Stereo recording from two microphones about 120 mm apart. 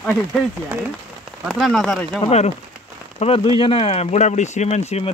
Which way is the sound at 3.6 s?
50° left (ahead or behind).